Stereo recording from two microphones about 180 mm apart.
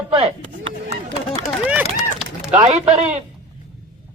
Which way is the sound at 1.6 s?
10° right (ahead or behind).